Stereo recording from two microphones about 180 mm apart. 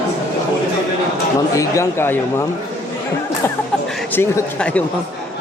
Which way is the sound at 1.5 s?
15° left (ahead or behind).